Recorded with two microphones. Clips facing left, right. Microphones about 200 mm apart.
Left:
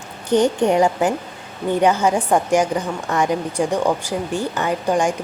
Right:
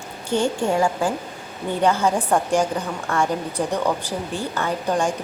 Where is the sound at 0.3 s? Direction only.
20° left (ahead or behind).